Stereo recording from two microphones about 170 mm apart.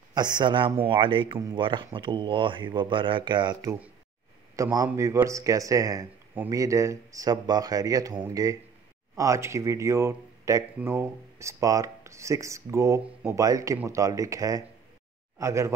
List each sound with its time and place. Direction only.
0.1 s a man's voice: 25° right (ahead or behind)
4.6 s a man's voice: 15° right (ahead or behind)